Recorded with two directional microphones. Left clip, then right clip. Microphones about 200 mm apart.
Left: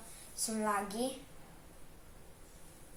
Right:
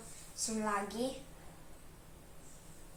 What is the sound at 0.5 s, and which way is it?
Speech, 25° left (ahead or behind).